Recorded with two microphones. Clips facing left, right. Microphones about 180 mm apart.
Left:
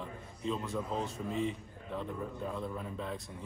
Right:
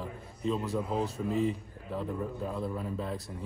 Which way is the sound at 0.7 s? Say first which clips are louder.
Right 4 dB; 35° right (ahead or behind).